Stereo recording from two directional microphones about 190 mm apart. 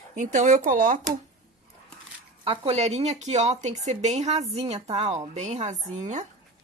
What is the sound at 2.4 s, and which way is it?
Speech, 30° right (ahead or behind).